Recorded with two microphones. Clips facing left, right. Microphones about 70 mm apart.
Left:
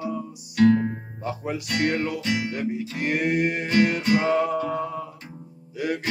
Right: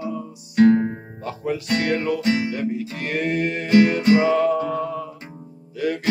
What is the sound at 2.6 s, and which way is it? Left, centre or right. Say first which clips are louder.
Music: right 2 dB; centre.